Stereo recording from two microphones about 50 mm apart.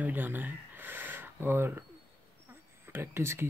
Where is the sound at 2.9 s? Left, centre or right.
Right.